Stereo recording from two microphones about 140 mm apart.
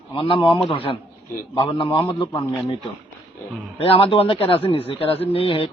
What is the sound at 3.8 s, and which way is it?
A man's voice, 40° left (ahead or behind).